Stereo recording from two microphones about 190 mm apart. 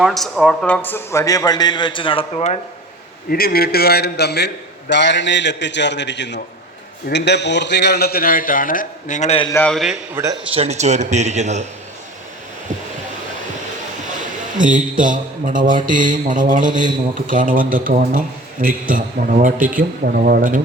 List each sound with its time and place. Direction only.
0.0 s a man's voice: centre (ahead or behind); by 2.6 s 30° left (ahead or behind)
3.2 s a man's voice: 50° left (ahead or behind); by 9.5 s 35° left (ahead or behind)
9.5 s a man's voice: 10° left (ahead or behind)
10.5 s a man's voice: 35° right (ahead or behind)
14.6 s a man's voice: 45° right (ahead or behind)